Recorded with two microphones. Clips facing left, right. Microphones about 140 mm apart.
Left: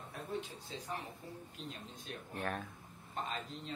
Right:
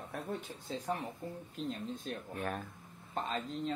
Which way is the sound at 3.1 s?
45° right (ahead or behind).